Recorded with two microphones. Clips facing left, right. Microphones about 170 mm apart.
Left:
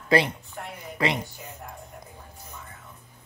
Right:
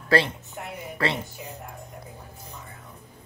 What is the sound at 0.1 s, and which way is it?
Speech, 15° left (ahead or behind).